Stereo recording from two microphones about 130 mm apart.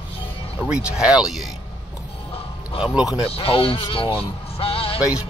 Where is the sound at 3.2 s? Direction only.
45° left (ahead or behind).